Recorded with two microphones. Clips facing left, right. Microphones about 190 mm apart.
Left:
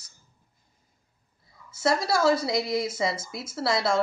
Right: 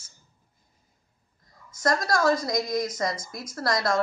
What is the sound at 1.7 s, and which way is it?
Speech, 5° left (ahead or behind).